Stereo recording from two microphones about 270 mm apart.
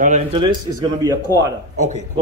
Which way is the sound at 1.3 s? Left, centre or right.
Centre.